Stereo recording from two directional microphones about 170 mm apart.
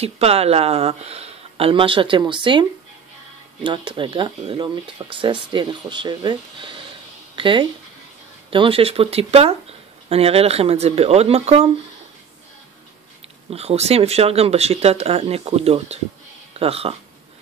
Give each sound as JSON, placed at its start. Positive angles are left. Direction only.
{"t": 0.0, "sound": "speech", "side_deg": -35}
{"t": 3.6, "sound": "speech", "side_deg": -30}
{"t": 13.5, "sound": "speech", "side_deg": -35}